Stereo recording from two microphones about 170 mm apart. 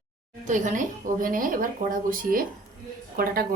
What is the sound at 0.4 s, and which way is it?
A woman's voice, 50° right (ahead or behind).